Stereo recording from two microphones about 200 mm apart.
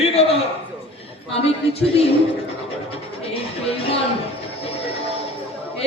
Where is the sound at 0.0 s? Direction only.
30° left (ahead or behind).